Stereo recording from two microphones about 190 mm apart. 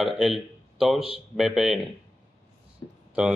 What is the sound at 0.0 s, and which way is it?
Speech, centre (ahead or behind).